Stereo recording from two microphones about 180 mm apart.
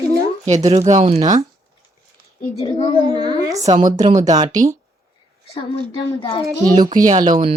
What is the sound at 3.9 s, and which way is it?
Speech, 20° right (ahead or behind).